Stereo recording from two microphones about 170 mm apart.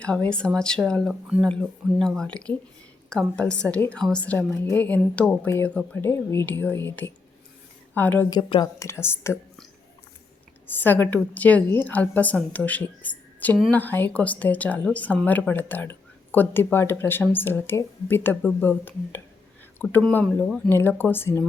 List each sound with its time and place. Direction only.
0.0 s a woman's voice: 5° left (ahead or behind)
8.3 s a woman's voice: 25° left (ahead or behind)
10.7 s a woman's voice: 10° left (ahead or behind)